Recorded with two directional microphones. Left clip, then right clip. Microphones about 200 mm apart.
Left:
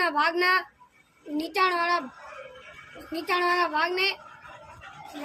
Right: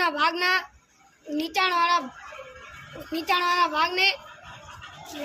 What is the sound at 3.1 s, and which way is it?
Speech, 20° left (ahead or behind).